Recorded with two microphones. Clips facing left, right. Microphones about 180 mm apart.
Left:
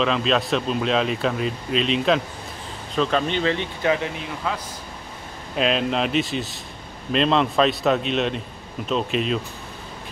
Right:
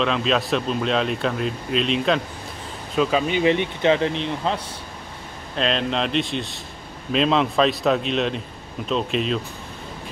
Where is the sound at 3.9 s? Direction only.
30° right (ahead or behind).